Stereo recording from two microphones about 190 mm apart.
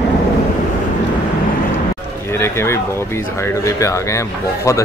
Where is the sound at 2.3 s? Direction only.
15° left (ahead or behind).